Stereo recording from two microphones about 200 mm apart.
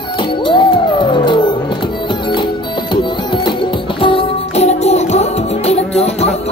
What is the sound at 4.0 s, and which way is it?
Music, 30° left (ahead or behind).